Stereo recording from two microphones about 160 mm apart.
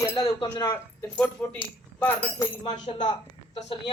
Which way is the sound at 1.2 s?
10° left (ahead or behind).